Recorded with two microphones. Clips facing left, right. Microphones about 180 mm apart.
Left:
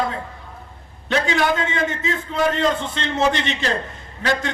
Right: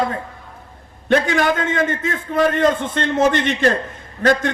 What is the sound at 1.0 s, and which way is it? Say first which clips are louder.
A man's voice: right 3 dB; 50° right (ahead or behind).